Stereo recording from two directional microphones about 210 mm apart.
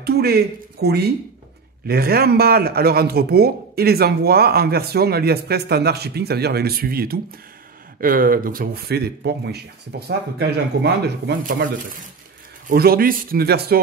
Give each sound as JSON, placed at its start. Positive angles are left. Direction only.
{"t": 0.0, "sound": "speech", "side_deg": -50}